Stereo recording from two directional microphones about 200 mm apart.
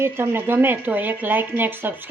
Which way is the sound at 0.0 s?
10° right (ahead or behind).